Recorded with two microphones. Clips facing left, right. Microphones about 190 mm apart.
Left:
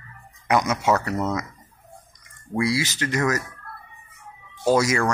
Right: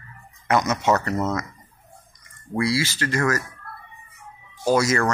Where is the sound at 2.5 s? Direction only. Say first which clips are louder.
Even; 15° left (ahead or behind).